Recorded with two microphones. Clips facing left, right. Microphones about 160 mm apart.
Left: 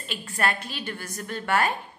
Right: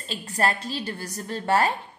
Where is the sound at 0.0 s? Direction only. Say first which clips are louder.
Right 2 dB; 35° right (ahead or behind).